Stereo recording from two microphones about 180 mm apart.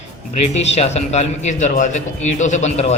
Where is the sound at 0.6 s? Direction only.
35° left (ahead or behind).